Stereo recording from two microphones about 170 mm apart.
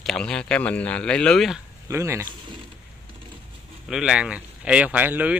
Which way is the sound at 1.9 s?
15° right (ahead or behind).